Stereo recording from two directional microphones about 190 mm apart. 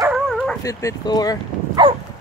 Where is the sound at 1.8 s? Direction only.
25° right (ahead or behind).